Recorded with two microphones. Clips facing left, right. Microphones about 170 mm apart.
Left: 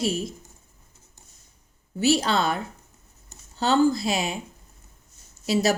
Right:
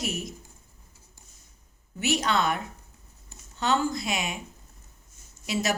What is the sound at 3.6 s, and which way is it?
Speech, 30° left (ahead or behind).